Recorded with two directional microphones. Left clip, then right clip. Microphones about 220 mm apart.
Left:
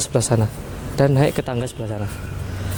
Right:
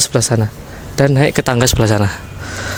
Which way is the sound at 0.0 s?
35° right (ahead or behind).